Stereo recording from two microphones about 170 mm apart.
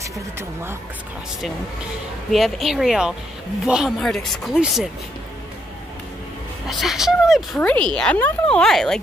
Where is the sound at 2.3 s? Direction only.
Centre (ahead or behind).